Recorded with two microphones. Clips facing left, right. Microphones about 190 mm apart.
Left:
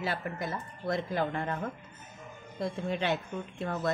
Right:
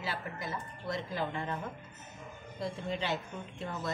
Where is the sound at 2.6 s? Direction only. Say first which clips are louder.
Left 4 dB; 60° left (ahead or behind).